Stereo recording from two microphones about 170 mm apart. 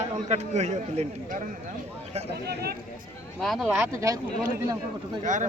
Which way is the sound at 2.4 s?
70° right (ahead or behind).